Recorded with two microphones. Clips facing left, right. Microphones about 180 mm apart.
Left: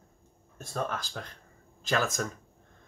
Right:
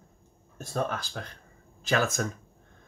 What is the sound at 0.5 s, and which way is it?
Speech, 5° right (ahead or behind).